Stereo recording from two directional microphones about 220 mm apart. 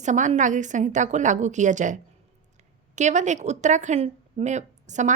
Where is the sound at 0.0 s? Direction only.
35° right (ahead or behind).